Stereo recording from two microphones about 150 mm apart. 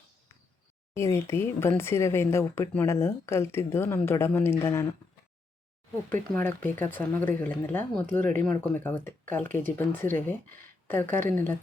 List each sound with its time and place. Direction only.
0.9 s speech: 20° left (ahead or behind)
6.3 s speech: 10° left (ahead or behind)